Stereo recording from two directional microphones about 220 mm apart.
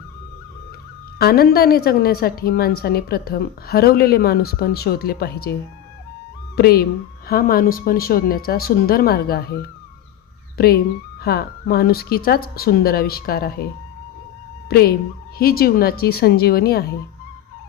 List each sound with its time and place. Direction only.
1.2 s a woman's voice: 45° left (ahead or behind)
6.6 s a woman's voice: 45° left (ahead or behind)
11.2 s a woman's voice: 45° left (ahead or behind)
14.7 s a woman's voice: 45° left (ahead or behind)